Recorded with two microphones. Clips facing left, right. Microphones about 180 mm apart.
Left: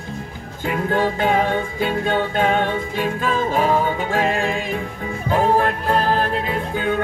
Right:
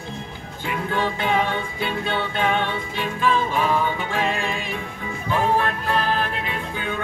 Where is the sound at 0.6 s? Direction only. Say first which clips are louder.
Left 5 dB; 45° left (ahead or behind).